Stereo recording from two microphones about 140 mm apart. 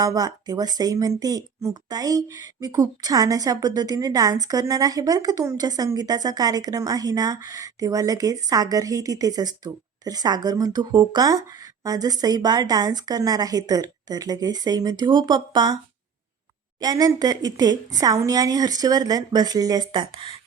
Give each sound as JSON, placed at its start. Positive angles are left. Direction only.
{"t": 0.0, "sound": "a woman's voice", "side_deg": -25}
{"t": 16.8, "sound": "a woman's voice", "side_deg": -25}